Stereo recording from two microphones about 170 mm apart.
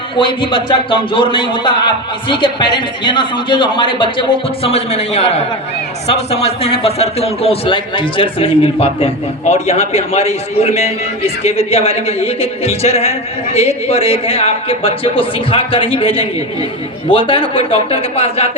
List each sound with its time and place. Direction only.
0.2 s a woman's voice: 30° left (ahead or behind)